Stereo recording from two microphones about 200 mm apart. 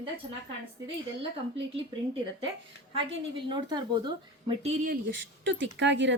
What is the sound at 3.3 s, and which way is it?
A woman's voice, 20° right (ahead or behind).